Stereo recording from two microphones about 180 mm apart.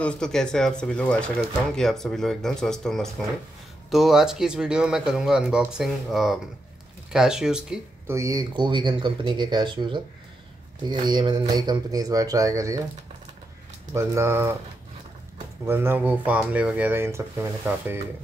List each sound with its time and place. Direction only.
0.0 s speech: 5° left (ahead or behind)
8.1 s speech: 20° right (ahead or behind)
13.9 s speech: 15° right (ahead or behind)